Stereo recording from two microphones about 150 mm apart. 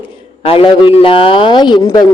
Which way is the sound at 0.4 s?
35° left (ahead or behind).